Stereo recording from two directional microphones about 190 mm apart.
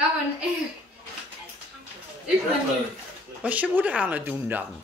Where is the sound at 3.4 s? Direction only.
10° right (ahead or behind).